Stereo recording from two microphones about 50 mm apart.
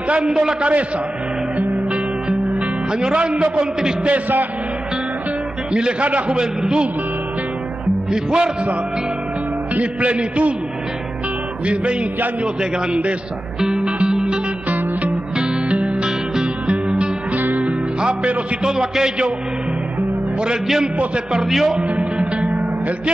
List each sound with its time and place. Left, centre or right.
0.1 s a man's voice: centre
1.6 s music: right
2.9 s a man's voice: centre
5.7 s a man's voice: centre
8.1 s a man's voice: centre
9.8 s a man's voice: right
11.6 s a man's voice: right
13.6 s music: centre; by 17.7 s right
18.0 s a man's voice: right
18.7 s a man's voice: centre
20.6 s a man's voice: centre
21.0 s a man's voice: centre
21.5 s speech: centre
21.8 s music: right